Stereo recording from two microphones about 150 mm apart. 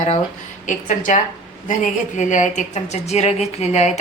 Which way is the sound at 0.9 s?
60° left (ahead or behind).